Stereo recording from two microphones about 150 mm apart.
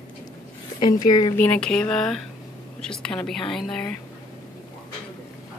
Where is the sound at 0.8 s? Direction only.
25° left (ahead or behind).